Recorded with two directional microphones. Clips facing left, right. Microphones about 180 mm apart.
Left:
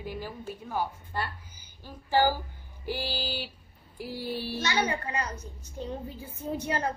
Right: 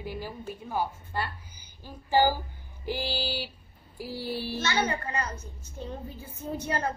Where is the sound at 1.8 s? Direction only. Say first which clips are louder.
Right 1 dB; 15° right (ahead or behind).